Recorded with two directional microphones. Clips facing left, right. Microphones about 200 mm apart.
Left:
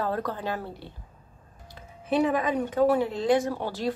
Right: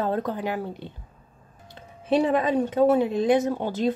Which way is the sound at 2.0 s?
30° right (ahead or behind).